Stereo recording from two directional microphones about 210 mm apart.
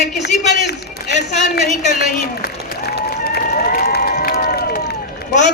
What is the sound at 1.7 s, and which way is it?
Speech, 35° left (ahead or behind).